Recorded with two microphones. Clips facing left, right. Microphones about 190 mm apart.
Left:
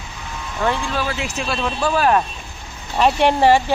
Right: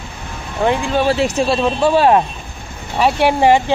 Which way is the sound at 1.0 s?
35° right (ahead or behind).